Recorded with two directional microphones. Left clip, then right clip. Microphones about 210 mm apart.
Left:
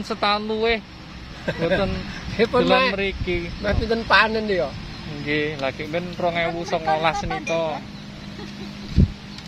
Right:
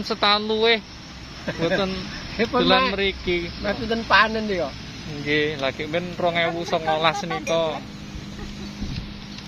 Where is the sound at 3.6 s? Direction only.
45° left (ahead or behind).